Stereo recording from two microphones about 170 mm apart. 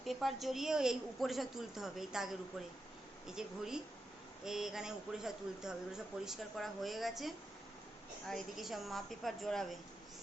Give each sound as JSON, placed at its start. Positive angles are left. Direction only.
{"t": 0.0, "sound": "speech", "side_deg": 0}